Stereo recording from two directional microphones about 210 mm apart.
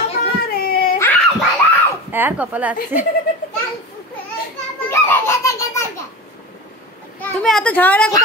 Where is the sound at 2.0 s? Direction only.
10° right (ahead or behind).